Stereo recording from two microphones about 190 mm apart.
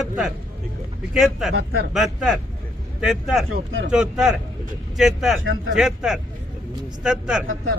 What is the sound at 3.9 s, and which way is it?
A man's voice, 5° right (ahead or behind).